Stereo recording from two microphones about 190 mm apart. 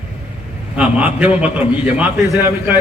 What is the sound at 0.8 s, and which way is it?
A man's voice, 5° right (ahead or behind).